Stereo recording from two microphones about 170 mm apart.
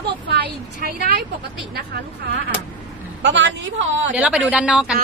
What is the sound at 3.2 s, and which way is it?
Speech, 90° right.